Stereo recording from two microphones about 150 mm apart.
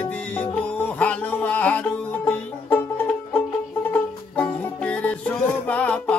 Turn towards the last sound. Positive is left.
turn(degrees=10)  # may be behind; listen again after turning